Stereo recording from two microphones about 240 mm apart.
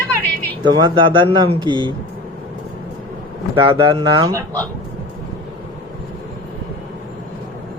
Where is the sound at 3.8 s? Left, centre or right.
Centre.